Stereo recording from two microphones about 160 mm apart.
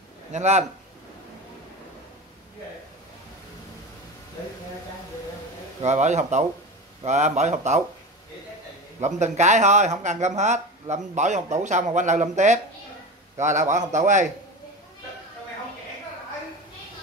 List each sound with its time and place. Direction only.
0.3 s speech: 45° right (ahead or behind)
5.8 s speech: 45° right (ahead or behind)
9.0 s speech: 45° right (ahead or behind)